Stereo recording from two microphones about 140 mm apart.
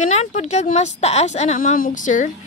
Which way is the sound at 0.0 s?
55° left (ahead or behind).